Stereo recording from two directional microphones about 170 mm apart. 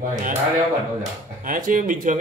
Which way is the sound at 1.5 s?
50° right (ahead or behind).